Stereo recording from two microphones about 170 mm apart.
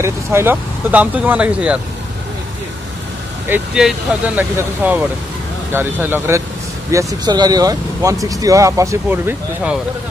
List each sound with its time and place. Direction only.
0.0 s speech: 15° right (ahead or behind)
3.4 s speech: 5° right (ahead or behind)